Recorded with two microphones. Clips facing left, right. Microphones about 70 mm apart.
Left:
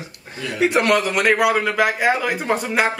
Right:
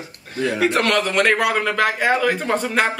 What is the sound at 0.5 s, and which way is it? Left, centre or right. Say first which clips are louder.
A man's voice: left 3 dB; centre.